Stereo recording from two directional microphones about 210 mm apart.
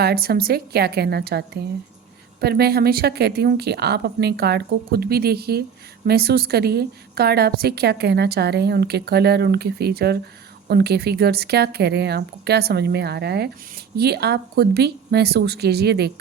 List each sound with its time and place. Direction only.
0.0 s a woman's voice: 50° right (ahead or behind)